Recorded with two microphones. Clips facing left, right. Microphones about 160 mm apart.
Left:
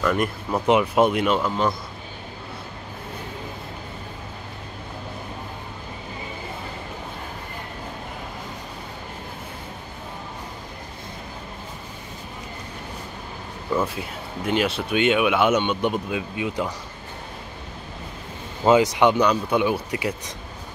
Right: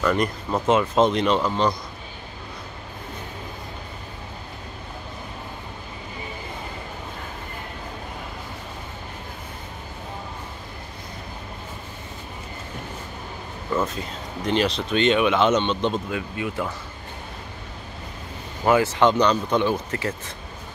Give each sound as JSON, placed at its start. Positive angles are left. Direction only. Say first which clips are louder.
{"t": 0.0, "sound": "speech", "louder": "even", "side_deg": 5}
{"t": 13.7, "sound": "speech", "louder": "left 1 dB", "side_deg": 10}
{"t": 18.6, "sound": "speech", "louder": "left 2 dB", "side_deg": 15}